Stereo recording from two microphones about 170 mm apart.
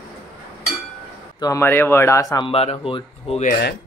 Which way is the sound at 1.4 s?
15° left (ahead or behind).